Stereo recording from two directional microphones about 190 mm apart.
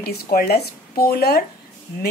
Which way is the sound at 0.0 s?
55° left (ahead or behind).